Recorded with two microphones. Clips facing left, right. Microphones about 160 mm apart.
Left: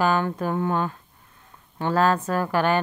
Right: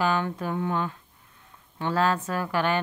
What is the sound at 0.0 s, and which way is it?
A woman's voice, 45° left (ahead or behind).